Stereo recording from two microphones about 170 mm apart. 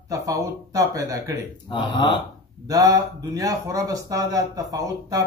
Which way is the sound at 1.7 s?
25° left (ahead or behind).